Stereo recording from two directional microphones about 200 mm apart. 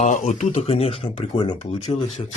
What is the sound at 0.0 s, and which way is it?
Speech, 35° left (ahead or behind).